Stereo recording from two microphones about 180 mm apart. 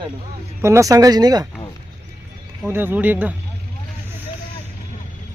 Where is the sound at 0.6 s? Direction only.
15° right (ahead or behind).